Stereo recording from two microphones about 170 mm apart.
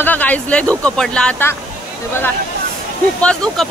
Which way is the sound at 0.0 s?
10° left (ahead or behind).